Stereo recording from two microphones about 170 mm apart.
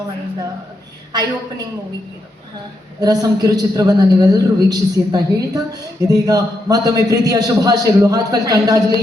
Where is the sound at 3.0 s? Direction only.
20° right (ahead or behind).